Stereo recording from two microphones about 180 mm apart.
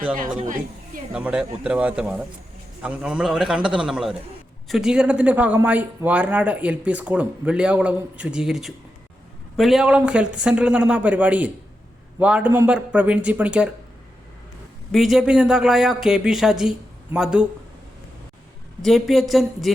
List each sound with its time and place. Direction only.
1.1 s speech: 5° right (ahead or behind)
14.9 s speech: centre (ahead or behind)
18.8 s speech: centre (ahead or behind)